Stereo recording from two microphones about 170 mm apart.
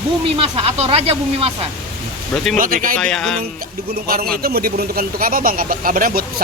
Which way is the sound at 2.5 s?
55° right (ahead or behind).